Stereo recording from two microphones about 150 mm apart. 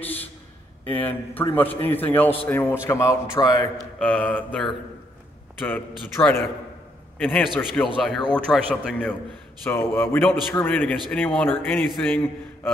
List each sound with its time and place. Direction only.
0.8 s a man's voice: 10° left (ahead or behind)
4.0 s a man's voice: 5° left (ahead or behind)